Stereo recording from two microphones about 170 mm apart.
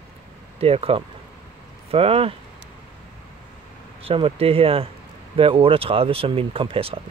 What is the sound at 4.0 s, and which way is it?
Speech, 35° right (ahead or behind).